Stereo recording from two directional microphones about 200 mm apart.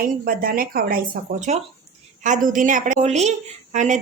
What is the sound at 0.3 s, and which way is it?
A woman's voice, 45° right (ahead or behind).